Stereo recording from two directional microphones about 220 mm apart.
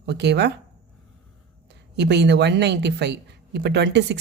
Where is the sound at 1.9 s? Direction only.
50° right (ahead or behind).